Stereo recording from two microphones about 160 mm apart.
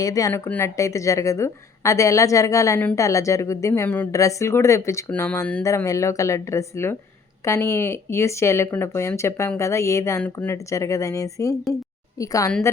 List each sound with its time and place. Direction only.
0.0 s a woman's voice: 20° left (ahead or behind)
12.5 s speech: 10° left (ahead or behind)